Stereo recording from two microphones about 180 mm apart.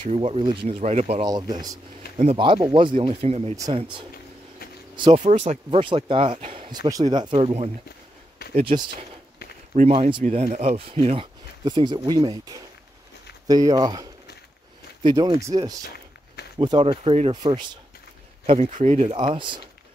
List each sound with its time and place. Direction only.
0.1 s speech: 30° right (ahead or behind)
1.2 s speech: 20° right (ahead or behind)
2.1 s speech: 30° right (ahead or behind)
3.5 s speech: 20° right (ahead or behind)
4.9 s speech: 25° right (ahead or behind)
5.2 s speech: 40° right (ahead or behind); by 14.0 s 20° right (ahead or behind)
15.0 s speech: 20° right (ahead or behind)
18.5 s speech: 40° right (ahead or behind)